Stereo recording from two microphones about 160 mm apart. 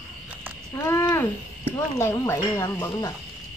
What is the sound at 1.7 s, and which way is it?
Speech, 15° left (ahead or behind).